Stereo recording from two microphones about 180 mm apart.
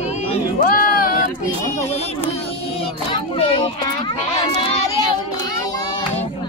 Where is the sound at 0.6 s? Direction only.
50° left (ahead or behind).